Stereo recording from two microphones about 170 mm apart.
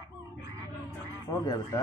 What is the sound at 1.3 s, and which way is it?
Speech, 20° left (ahead or behind).